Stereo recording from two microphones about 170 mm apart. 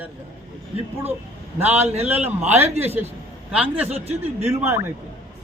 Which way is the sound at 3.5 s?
5° right (ahead or behind).